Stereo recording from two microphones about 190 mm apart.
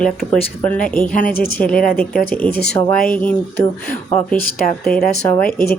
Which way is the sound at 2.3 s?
10° left (ahead or behind).